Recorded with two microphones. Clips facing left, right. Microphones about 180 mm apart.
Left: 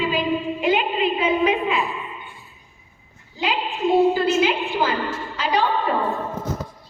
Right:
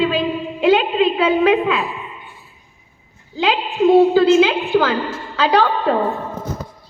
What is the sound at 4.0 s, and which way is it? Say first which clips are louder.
A woman's voice: right 5 dB; 85° right.